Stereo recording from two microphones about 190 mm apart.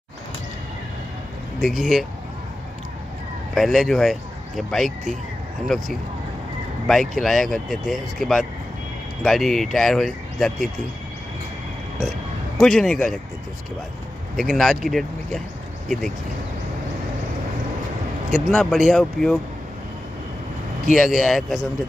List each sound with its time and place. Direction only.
1.6 s speech: centre (ahead or behind)
3.5 s speech: centre (ahead or behind)
6.9 s speech: centre (ahead or behind)
12.6 s speech: centre (ahead or behind)
14.3 s speech: centre (ahead or behind)
18.3 s speech: centre (ahead or behind)
20.9 s speech: centre (ahead or behind)